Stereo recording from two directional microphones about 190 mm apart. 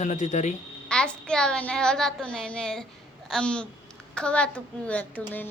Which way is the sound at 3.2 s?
5° left (ahead or behind).